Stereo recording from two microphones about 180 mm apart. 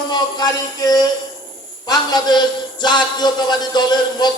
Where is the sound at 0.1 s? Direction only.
20° left (ahead or behind).